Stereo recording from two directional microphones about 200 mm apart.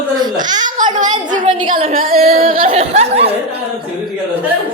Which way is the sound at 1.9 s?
45° right (ahead or behind).